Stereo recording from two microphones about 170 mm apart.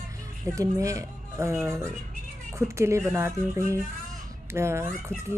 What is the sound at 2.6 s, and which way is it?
Speech, 15° right (ahead or behind).